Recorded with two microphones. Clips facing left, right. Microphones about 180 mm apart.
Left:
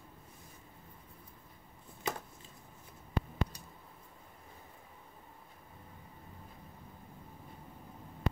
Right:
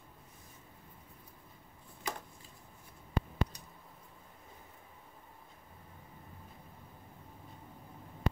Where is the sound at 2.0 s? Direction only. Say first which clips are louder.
Left 3 dB; 25° left (ahead or behind).